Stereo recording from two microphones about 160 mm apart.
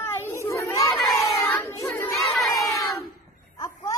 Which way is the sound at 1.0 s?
20° left (ahead or behind).